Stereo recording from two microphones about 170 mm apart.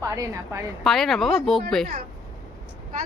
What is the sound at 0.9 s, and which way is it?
Speech, centre (ahead or behind).